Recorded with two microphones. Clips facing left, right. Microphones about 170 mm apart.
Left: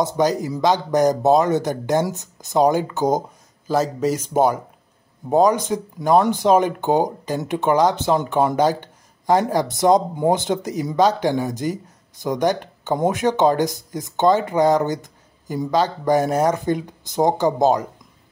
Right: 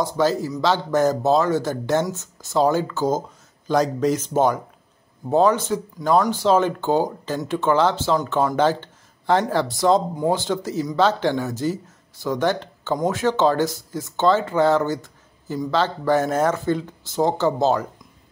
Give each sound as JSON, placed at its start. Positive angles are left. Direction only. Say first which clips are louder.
{"t": 0.0, "sound": "speech", "louder": "left 1 dB", "side_deg": 15}
{"t": 3.6, "sound": "speech", "louder": "even", "side_deg": 5}